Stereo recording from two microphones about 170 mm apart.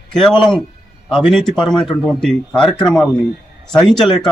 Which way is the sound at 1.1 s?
Centre (ahead or behind).